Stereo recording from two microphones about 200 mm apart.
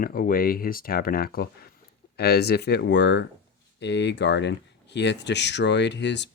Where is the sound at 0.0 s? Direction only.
45° left (ahead or behind).